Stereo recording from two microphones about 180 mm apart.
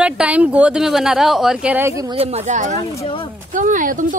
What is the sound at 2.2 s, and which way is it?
Speech, 35° right (ahead or behind).